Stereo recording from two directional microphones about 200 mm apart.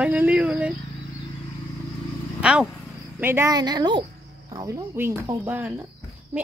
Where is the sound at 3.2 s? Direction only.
10° right (ahead or behind).